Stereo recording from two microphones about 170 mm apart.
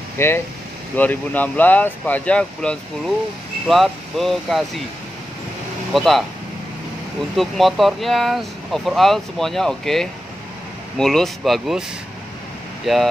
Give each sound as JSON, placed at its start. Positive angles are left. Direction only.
{"t": 0.2, "sound": "speech", "side_deg": 15}
{"t": 5.9, "sound": "speech", "side_deg": 0}
{"t": 7.3, "sound": "speech", "side_deg": 0}
{"t": 12.8, "sound": "speech", "side_deg": 0}